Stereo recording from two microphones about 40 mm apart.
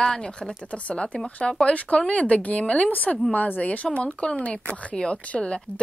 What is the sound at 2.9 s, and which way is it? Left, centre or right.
Speech, left.